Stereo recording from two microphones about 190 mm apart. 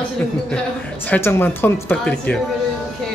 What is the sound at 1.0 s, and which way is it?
Speech, 10° left (ahead or behind).